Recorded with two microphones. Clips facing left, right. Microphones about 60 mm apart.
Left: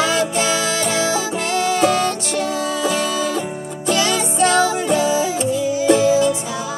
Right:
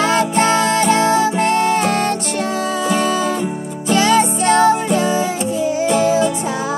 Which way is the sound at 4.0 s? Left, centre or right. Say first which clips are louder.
Right 5 dB; right.